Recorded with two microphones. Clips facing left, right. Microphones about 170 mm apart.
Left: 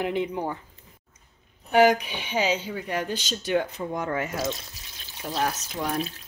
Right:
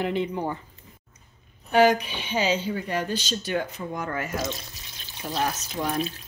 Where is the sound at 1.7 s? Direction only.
15° left (ahead or behind).